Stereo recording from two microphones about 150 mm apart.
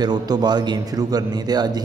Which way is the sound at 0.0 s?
30° right (ahead or behind).